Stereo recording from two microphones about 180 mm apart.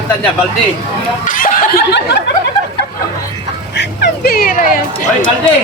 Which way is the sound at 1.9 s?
70° left (ahead or behind).